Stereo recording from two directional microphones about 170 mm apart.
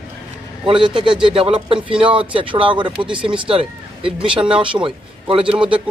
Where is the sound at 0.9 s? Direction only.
30° right (ahead or behind).